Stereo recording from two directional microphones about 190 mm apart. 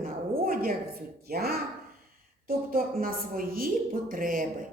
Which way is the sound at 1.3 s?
55° right (ahead or behind).